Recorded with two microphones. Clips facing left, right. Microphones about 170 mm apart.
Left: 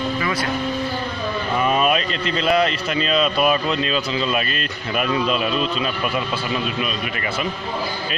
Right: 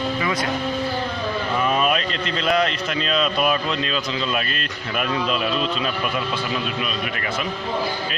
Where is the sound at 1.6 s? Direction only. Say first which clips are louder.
Left 2 dB; 5° left (ahead or behind).